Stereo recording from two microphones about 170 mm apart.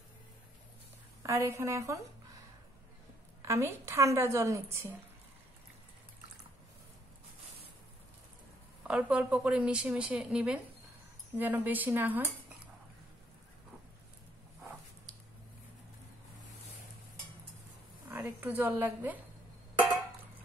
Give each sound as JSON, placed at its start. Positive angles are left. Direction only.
{"t": 1.2, "sound": "a woman's voice", "side_deg": -15}
{"t": 3.4, "sound": "a woman's voice", "side_deg": -15}
{"t": 8.8, "sound": "a woman's voice", "side_deg": -5}
{"t": 18.1, "sound": "a woman's voice", "side_deg": -10}